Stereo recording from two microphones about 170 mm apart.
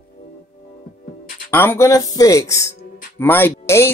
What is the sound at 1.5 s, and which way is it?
Speech, 10° left (ahead or behind).